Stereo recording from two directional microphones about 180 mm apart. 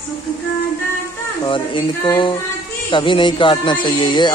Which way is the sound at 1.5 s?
25° left (ahead or behind).